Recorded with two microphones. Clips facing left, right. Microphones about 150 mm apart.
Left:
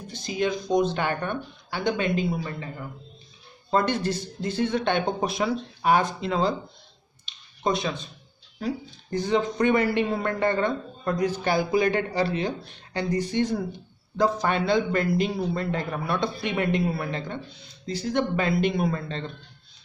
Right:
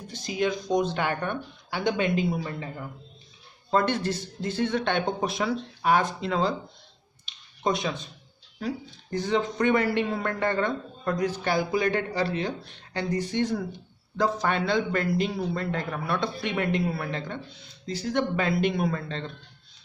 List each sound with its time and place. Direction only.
0.3 s speech: 5° right (ahead or behind)
3.7 s speech: centre (ahead or behind)
7.6 s speech: 15° right (ahead or behind)
8.5 s speech: 5° left (ahead or behind)
10.0 s a man's voice: 15° left (ahead or behind)
13.2 s speech: centre (ahead or behind)